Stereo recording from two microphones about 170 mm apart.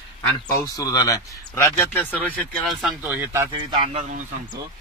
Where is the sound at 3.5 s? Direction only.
30° right (ahead or behind).